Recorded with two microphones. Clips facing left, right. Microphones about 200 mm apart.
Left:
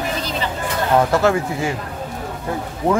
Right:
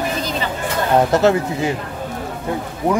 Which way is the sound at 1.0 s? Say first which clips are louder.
Right 3 dB; 20° right (ahead or behind).